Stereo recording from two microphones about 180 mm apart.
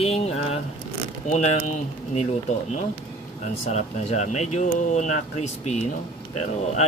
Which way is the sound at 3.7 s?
40° left (ahead or behind).